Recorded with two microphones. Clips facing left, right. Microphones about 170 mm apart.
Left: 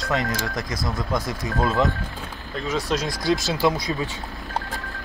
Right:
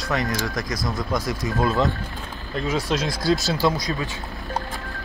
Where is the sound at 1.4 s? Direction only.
20° left (ahead or behind).